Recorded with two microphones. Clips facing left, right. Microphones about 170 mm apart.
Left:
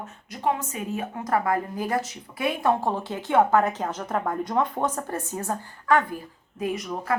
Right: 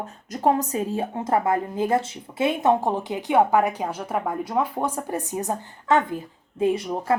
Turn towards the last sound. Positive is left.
turn(degrees=-30)  # may be behind; listen again after turning